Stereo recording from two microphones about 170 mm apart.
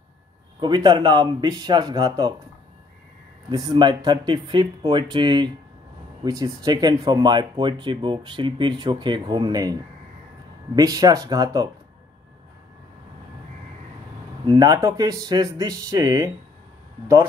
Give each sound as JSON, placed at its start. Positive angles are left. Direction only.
{"t": 0.6, "sound": "speech", "side_deg": -25}
{"t": 3.4, "sound": "speech", "side_deg": -25}
{"t": 10.8, "sound": "speech", "side_deg": -20}
{"t": 14.4, "sound": "speech", "side_deg": -25}